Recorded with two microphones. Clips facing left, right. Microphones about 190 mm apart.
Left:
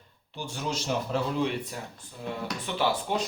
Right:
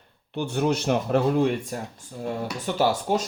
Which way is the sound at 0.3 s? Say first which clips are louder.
Right 9 dB; 60° right (ahead or behind).